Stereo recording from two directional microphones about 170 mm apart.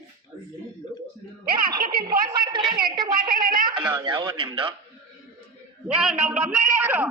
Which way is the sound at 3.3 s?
60° right (ahead or behind).